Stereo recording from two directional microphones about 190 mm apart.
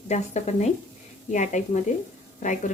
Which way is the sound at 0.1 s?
35° left (ahead or behind).